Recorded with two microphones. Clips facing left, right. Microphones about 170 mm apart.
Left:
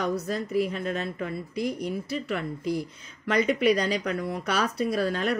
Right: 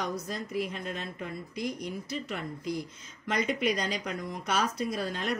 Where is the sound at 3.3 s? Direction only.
55° left (ahead or behind).